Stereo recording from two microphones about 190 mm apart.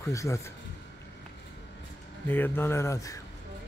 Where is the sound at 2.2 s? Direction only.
10° left (ahead or behind).